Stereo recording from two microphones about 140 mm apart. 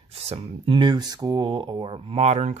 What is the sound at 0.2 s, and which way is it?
Speech, 45° right (ahead or behind).